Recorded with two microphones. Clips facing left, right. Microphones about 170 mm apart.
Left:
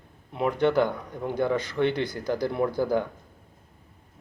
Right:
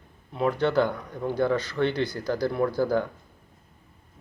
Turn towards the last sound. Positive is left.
turn(degrees=20)  # may be behind; listen again after turning